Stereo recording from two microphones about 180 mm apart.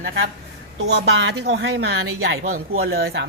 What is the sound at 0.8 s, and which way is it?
A woman's voice, 70° right (ahead or behind).